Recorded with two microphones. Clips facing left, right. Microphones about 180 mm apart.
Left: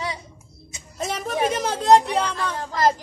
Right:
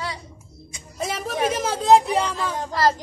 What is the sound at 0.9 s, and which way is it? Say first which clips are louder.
Speech: left 1 dB; centre (ahead or behind).